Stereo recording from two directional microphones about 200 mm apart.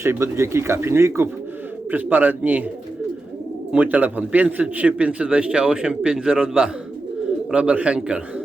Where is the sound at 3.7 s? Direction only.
10° right (ahead or behind).